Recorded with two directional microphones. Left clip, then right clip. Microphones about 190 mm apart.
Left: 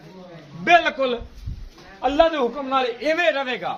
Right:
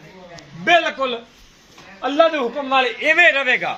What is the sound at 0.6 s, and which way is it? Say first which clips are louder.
A man's voice: right 1 dB; 30° right (ahead or behind).